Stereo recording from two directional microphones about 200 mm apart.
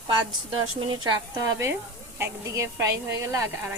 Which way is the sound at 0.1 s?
20° right (ahead or behind).